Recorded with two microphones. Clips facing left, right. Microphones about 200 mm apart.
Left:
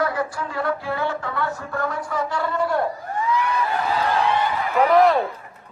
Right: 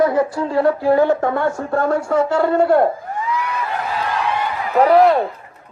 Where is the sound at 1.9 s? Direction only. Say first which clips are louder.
Right 9 dB; 65° right (ahead or behind).